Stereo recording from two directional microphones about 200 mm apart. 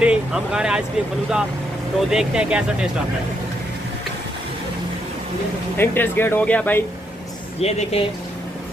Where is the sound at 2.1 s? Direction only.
5° right (ahead or behind).